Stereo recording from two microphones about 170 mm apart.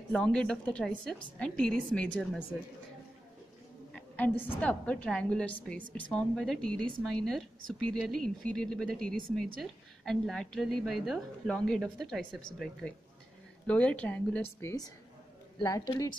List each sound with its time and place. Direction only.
0.1 s a woman's voice: 5° left (ahead or behind)
3.9 s a woman's voice: 10° left (ahead or behind)